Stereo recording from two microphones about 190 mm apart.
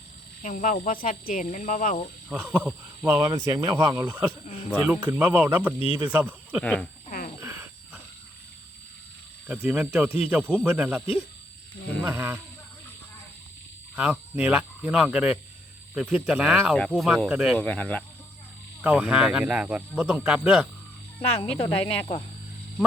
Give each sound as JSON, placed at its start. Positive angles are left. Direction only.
{"t": 0.4, "sound": "speech", "side_deg": 40}
{"t": 2.3, "sound": "speech", "side_deg": -5}
{"t": 7.3, "sound": "a sound", "side_deg": -10}
{"t": 9.5, "sound": "speech", "side_deg": -5}
{"t": 12.0, "sound": "speech", "side_deg": -15}
{"t": 13.9, "sound": "speech", "side_deg": -10}
{"t": 17.6, "sound": "speech", "side_deg": 5}
{"t": 18.8, "sound": "speech", "side_deg": -10}
{"t": 21.2, "sound": "speech", "side_deg": 30}